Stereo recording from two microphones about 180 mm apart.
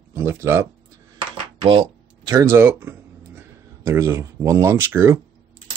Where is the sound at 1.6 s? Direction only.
25° right (ahead or behind).